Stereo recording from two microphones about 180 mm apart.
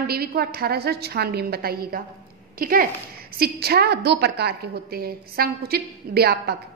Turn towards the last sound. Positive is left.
turn(degrees=-60)  # may be behind; listen again after turning